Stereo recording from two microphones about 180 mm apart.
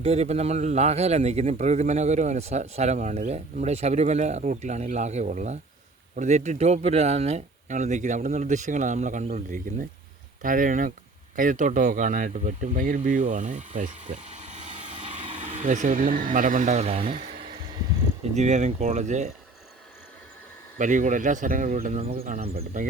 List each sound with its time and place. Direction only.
0.0 s speech: 35° right (ahead or behind)
18.3 s speech: 40° right (ahead or behind)
20.7 s speech: 45° right (ahead or behind)